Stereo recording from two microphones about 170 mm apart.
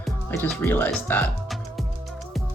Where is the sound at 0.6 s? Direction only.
10° left (ahead or behind).